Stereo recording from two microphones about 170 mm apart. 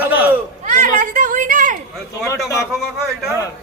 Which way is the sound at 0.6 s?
50° right (ahead or behind).